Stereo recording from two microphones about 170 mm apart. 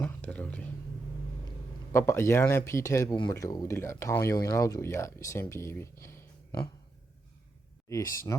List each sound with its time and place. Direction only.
0.0 s a sound: 10° left (ahead or behind)
1.9 s speech: 15° left (ahead or behind)
7.9 s speech: 15° left (ahead or behind)